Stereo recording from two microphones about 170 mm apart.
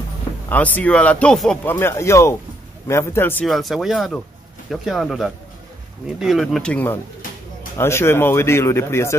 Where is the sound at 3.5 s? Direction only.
Centre (ahead or behind).